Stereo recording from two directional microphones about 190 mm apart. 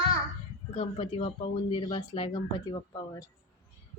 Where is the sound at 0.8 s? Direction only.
35° left (ahead or behind).